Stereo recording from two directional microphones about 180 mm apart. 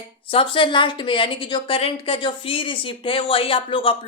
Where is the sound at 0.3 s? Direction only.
30° left (ahead or behind).